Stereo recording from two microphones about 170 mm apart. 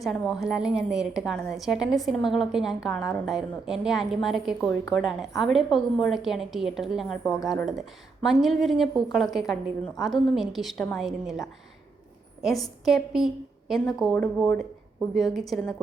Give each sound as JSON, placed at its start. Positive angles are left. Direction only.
{"t": 0.0, "sound": "a woman's voice", "side_deg": 0}
{"t": 7.3, "sound": "speech", "side_deg": 20}
{"t": 8.2, "sound": "a woman's voice", "side_deg": 0}
{"t": 12.8, "sound": "a woman's voice", "side_deg": 0}